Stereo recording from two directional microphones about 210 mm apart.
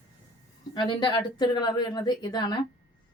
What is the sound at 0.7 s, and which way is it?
A woman's voice, 20° left (ahead or behind).